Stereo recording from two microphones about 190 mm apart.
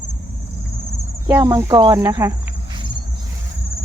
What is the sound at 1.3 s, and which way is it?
Speech, 15° right (ahead or behind).